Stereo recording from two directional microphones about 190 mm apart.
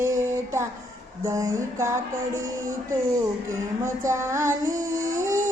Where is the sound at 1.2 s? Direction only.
15° right (ahead or behind).